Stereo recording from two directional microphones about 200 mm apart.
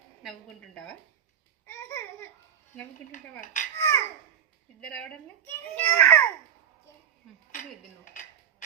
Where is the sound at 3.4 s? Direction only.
40° left (ahead or behind).